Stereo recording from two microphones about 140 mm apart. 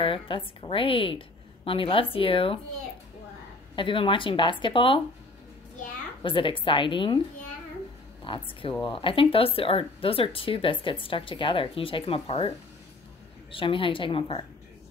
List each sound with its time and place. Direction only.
0.0 s speech: 40° left (ahead or behind)
3.7 s speech: 40° left (ahead or behind)
6.2 s speech: 35° left (ahead or behind)
8.2 s speech: 40° left (ahead or behind)